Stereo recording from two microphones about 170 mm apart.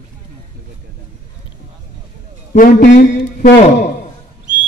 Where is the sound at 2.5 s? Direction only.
50° left (ahead or behind).